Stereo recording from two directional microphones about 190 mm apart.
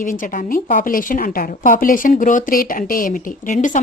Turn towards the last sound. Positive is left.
turn(degrees=40)  # may be behind; listen again after turning